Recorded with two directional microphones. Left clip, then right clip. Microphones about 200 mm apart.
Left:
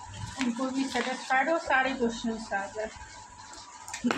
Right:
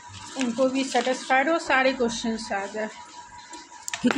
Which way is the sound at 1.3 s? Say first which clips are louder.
Right 2 dB; 60° right (ahead or behind).